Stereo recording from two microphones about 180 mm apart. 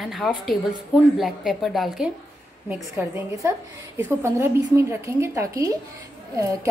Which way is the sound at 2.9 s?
15° right (ahead or behind).